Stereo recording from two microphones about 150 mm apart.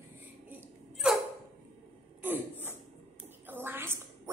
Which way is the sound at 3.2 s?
15° right (ahead or behind).